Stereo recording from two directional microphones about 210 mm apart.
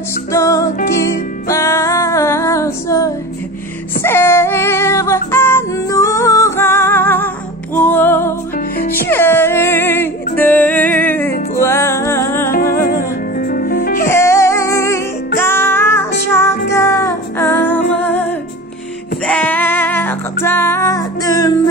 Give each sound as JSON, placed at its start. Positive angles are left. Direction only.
{"t": 0.3, "sound": "music", "side_deg": 15}
{"t": 4.0, "sound": "female singing", "side_deg": 10}
{"t": 7.7, "sound": "music", "side_deg": 10}
{"t": 12.4, "sound": "music", "side_deg": 45}
{"t": 14.0, "sound": "music", "side_deg": 10}
{"t": 19.2, "sound": "music", "side_deg": 5}